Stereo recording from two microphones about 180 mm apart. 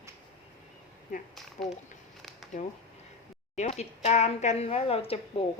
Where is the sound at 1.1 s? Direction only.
45° left (ahead or behind).